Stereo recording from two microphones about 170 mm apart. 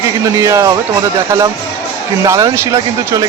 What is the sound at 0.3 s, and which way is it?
Speech, 20° right (ahead or behind).